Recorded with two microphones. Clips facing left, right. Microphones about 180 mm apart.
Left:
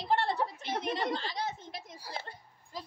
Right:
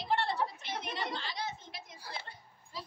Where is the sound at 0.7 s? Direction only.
45° left (ahead or behind).